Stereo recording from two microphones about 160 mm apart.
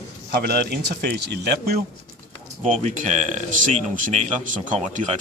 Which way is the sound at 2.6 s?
55° right (ahead or behind).